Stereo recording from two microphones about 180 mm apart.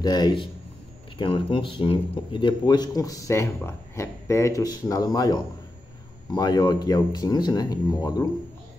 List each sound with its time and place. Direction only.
0.0 s speech: 25° left (ahead or behind)